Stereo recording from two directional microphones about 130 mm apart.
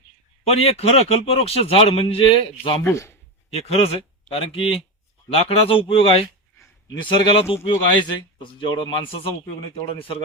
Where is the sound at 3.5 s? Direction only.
50° left (ahead or behind).